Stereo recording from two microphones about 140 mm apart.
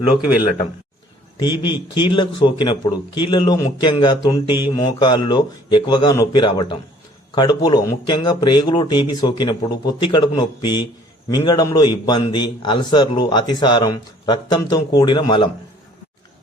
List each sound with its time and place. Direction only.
1.4 s a man's voice: 30° left (ahead or behind)